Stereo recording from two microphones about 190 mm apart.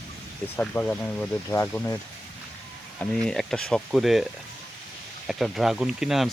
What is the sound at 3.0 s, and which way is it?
Speech, 5° left (ahead or behind).